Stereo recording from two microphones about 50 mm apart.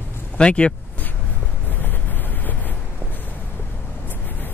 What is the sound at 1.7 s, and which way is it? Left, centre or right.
Vehicle, left.